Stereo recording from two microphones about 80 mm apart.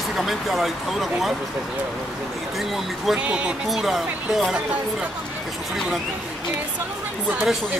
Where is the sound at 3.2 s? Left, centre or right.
Centre.